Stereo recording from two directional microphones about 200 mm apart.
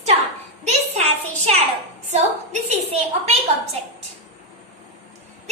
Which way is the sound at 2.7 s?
35° right (ahead or behind).